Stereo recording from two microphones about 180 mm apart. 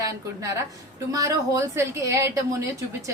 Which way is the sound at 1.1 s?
20° right (ahead or behind).